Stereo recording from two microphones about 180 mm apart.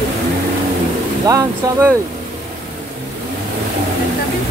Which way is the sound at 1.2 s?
20° right (ahead or behind).